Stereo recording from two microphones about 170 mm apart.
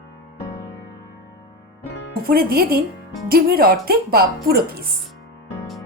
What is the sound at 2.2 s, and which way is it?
Speech, 65° right (ahead or behind).